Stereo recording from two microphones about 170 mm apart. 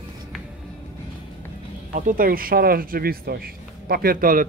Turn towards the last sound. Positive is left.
turn(degrees=-55)  # may be behind; listen again after turning